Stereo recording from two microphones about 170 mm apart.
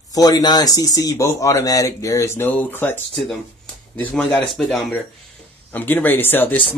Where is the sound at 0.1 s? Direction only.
20° left (ahead or behind).